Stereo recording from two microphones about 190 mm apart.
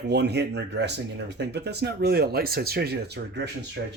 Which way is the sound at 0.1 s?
60° right (ahead or behind).